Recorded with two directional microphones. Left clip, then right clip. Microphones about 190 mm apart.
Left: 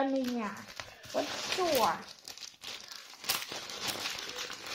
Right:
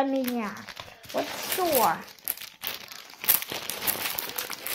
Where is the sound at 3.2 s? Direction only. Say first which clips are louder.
Right 4 dB; 35° right (ahead or behind).